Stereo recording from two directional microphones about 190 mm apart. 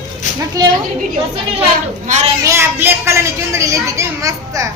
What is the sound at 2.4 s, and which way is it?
A woman's voice, 10° right (ahead or behind).